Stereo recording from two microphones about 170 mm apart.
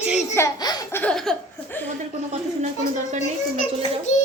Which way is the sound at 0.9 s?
5° left (ahead or behind).